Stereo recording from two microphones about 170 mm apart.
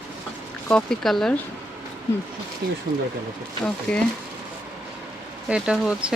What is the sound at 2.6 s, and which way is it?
Speech, 70° right (ahead or behind).